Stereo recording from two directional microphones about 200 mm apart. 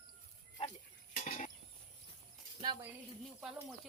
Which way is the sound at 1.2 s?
40° left (ahead or behind).